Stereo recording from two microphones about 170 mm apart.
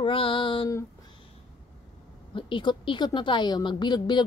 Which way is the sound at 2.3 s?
30° left (ahead or behind).